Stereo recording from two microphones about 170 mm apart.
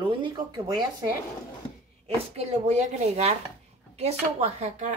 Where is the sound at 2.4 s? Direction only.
40° right (ahead or behind).